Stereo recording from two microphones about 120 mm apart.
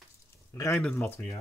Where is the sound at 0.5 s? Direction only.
25° left (ahead or behind).